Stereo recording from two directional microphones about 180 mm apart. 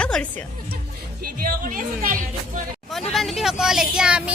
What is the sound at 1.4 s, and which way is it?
Speech, 50° right (ahead or behind).